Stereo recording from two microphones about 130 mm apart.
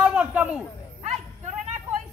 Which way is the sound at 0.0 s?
10° right (ahead or behind).